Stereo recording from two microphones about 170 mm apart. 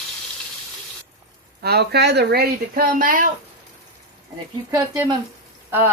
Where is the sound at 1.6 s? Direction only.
70° right (ahead or behind).